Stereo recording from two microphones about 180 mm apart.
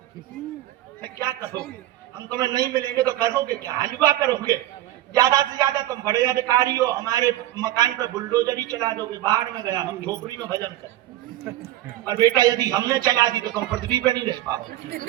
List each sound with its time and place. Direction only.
1.0 s a man's voice: 20° right (ahead or behind)
12.0 s a man's voice: 20° right (ahead or behind)